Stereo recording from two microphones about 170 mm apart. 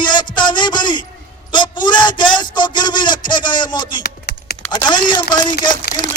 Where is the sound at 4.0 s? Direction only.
65° left (ahead or behind).